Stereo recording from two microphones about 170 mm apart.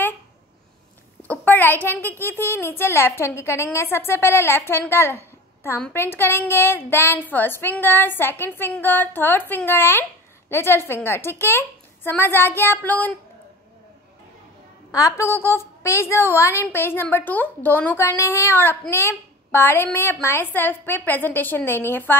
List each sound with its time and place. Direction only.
1.2 s a woman's voice: 10° left (ahead or behind)
14.9 s a woman's voice: 20° left (ahead or behind)